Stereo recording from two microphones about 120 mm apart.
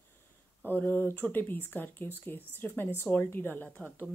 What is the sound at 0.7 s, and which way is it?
Speech, 15° left (ahead or behind).